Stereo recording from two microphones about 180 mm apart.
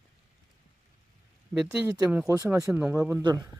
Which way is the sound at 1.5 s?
5° right (ahead or behind).